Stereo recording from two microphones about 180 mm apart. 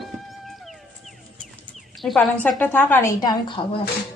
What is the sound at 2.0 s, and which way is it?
A woman's voice, 5° left (ahead or behind).